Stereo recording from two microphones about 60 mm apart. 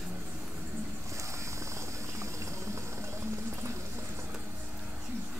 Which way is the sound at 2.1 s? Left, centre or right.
Right.